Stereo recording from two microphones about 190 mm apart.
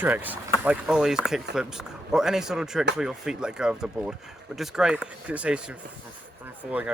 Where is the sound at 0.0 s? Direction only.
10° right (ahead or behind).